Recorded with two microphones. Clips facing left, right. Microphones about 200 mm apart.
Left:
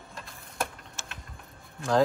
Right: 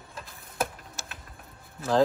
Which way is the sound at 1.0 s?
40° right (ahead or behind).